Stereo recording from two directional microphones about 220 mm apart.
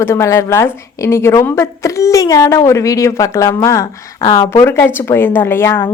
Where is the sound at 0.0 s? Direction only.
10° left (ahead or behind).